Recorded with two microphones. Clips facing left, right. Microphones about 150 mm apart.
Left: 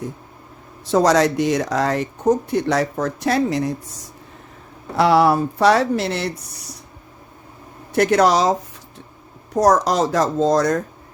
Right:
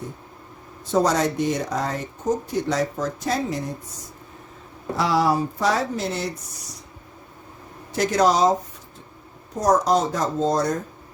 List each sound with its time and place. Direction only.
0.9 s speech: 90° left
4.9 s speech: 65° left (ahead or behind)
7.9 s speech: 65° left (ahead or behind); by 8.5 s 80° left
9.6 s speech: 80° left